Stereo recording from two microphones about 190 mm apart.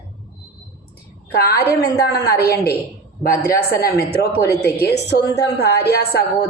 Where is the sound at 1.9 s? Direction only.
55° left (ahead or behind).